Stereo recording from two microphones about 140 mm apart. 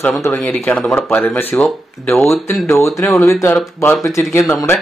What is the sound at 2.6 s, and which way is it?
Speech, 20° left (ahead or behind).